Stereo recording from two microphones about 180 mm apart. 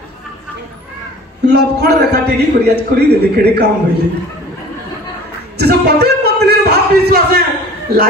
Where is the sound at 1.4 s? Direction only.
65° right (ahead or behind).